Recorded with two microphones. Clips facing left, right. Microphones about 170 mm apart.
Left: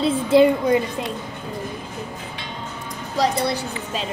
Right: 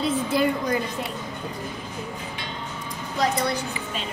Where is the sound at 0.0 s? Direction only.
25° left (ahead or behind).